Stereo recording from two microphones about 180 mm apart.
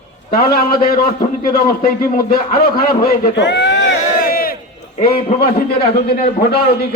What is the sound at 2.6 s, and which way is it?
A man's voice, 55° left (ahead or behind).